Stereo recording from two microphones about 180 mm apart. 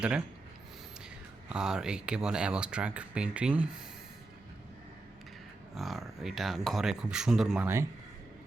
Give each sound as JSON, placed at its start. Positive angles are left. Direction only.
{"t": 1.5, "sound": "speech", "side_deg": -5}
{"t": 5.7, "sound": "speech", "side_deg": 0}